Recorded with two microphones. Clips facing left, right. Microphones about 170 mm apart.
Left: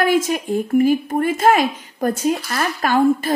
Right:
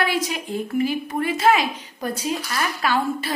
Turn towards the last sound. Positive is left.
turn(degrees=45)  # may be behind; listen again after turning